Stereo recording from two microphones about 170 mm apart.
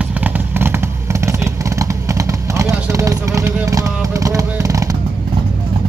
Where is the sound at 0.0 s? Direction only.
10° right (ahead or behind).